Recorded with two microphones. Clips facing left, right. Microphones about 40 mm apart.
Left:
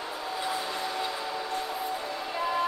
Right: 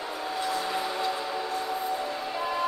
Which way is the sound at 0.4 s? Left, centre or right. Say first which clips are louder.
Right 2 dB; centre.